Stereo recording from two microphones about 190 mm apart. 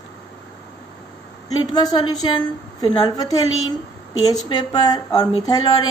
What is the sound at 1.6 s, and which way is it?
Speech, 20° left (ahead or behind).